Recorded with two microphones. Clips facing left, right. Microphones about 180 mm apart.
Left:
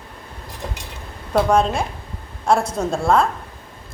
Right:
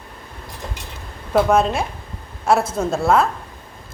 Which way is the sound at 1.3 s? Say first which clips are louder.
Right 1 dB; 5° right (ahead or behind).